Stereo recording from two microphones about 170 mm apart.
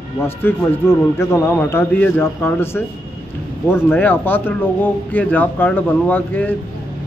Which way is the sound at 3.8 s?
10° left (ahead or behind).